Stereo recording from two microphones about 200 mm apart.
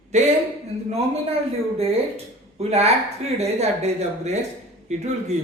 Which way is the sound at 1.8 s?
30° right (ahead or behind).